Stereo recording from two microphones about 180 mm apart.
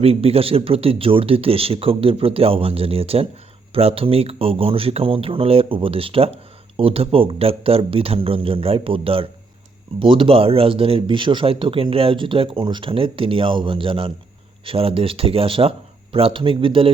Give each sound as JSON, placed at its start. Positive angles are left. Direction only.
{"t": 0.0, "sound": "speech", "side_deg": -35}